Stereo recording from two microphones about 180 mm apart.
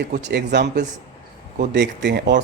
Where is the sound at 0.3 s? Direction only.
75° right (ahead or behind).